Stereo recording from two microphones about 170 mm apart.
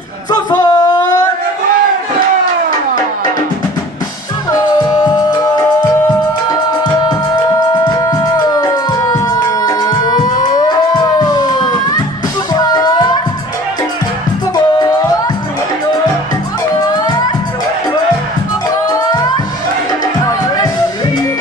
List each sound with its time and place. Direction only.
0.3 s a sound: 25° left (ahead or behind)
4.5 s music: 20° left (ahead or behind)
14.5 s music: 25° left (ahead or behind)
16.9 s music: 25° left (ahead or behind)
18.9 s music: 20° left (ahead or behind)